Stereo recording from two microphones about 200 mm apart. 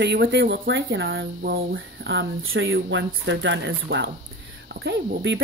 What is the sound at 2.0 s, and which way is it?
Speech, 80° right.